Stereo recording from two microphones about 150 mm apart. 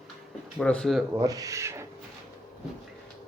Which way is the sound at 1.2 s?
25° right (ahead or behind).